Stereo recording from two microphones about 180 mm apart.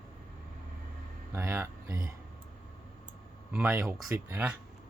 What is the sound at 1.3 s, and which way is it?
Speech, 15° right (ahead or behind).